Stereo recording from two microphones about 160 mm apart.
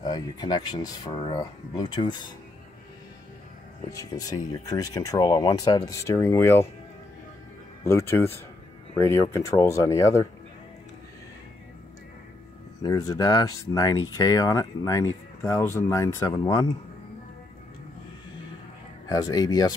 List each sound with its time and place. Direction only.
0.0 s speech: 25° left (ahead or behind)
3.9 s speech: 20° left (ahead or behind)
7.8 s speech: 15° left (ahead or behind)
12.8 s speech: 20° left (ahead or behind)
19.0 s speech: 25° left (ahead or behind)